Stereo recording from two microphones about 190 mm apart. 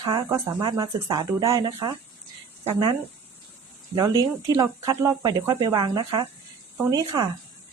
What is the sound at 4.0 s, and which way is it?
Speech, 20° right (ahead or behind).